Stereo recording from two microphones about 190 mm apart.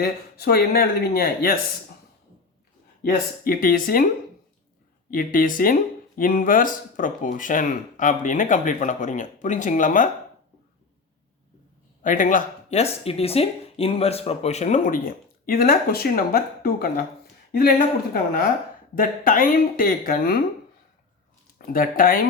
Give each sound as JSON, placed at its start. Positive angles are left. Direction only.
{"t": 0.0, "sound": "speech", "side_deg": 55}
{"t": 3.0, "sound": "speech", "side_deg": 50}
{"t": 5.1, "sound": "speech", "side_deg": 45}
{"t": 12.0, "sound": "speech", "side_deg": 45}
{"t": 18.9, "sound": "speech", "side_deg": 45}
{"t": 21.7, "sound": "speech", "side_deg": 50}